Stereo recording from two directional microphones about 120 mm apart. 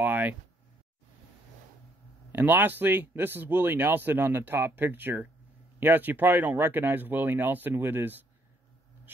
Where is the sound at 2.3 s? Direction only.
15° right (ahead or behind).